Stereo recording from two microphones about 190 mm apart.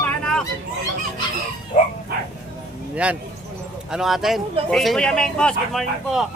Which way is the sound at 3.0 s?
5° right (ahead or behind).